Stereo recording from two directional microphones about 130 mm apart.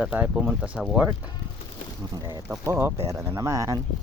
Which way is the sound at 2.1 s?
30° right (ahead or behind).